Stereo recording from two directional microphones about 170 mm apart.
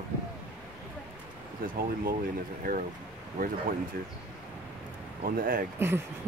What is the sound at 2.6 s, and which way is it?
Speech, 55° right (ahead or behind).